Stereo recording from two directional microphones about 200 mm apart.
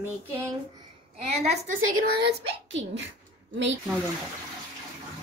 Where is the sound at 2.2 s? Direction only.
65° right (ahead or behind).